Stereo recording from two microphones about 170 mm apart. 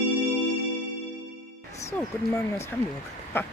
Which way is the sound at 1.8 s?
15° left (ahead or behind).